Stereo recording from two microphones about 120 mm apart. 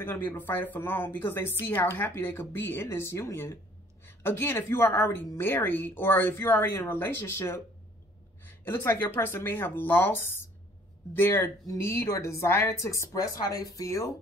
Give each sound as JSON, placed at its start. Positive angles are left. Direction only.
{"t": 0.0, "sound": "a woman's voice", "side_deg": 20}